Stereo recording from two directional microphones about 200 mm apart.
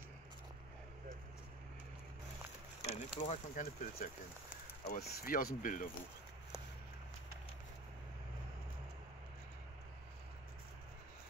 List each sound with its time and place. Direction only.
2.8 s speech: 35° left (ahead or behind)